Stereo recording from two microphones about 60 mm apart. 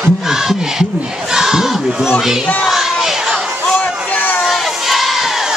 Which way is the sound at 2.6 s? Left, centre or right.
Centre.